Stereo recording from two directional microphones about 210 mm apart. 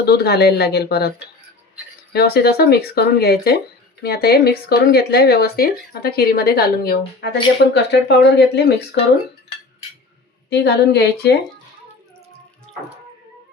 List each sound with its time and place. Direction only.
0.0 s speech: 50° left (ahead or behind)
2.1 s speech: 50° left (ahead or behind)
10.5 s speech: 50° left (ahead or behind)